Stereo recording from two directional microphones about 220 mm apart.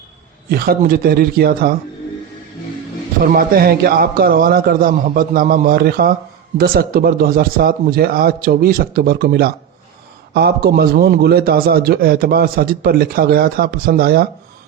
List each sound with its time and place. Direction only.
0.4 s a man's voice: 45° right (ahead or behind)
3.2 s a man's voice: 40° right (ahead or behind)